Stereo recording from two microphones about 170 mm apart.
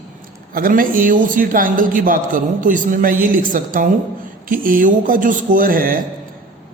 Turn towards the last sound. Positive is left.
turn(degrees=-55)  # may be behind; listen again after turning